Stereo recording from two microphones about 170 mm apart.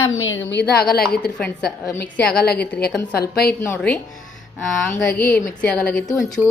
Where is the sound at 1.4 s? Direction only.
5° left (ahead or behind).